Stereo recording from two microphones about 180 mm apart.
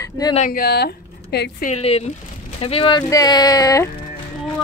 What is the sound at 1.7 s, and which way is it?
Speech, 35° left (ahead or behind).